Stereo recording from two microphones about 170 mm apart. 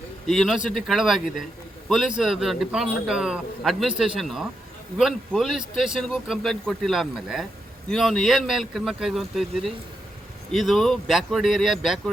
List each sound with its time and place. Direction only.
0.3 s a man's voice: centre (ahead or behind)